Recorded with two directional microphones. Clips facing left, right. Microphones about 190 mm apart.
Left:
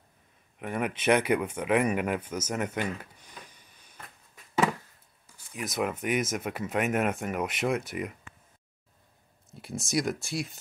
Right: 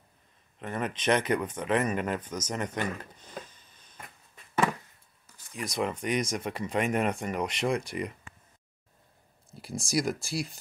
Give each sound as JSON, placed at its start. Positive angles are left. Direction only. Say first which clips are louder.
{"t": 0.6, "sound": "speech", "louder": "left 2 dB", "side_deg": 10}
{"t": 3.4, "sound": "a sound", "louder": "left 1 dB", "side_deg": 15}
{"t": 5.2, "sound": "speech", "louder": "even", "side_deg": 5}
{"t": 9.5, "sound": "speech", "louder": "even", "side_deg": 0}